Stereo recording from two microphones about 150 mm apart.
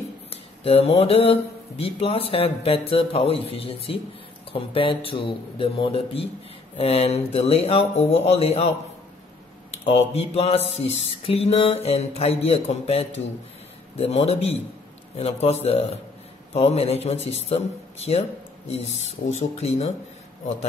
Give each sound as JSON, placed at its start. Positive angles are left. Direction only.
{"t": 0.3, "sound": "speech", "side_deg": 40}
{"t": 6.8, "sound": "mantra", "side_deg": 40}
{"t": 9.8, "sound": "mantra", "side_deg": 45}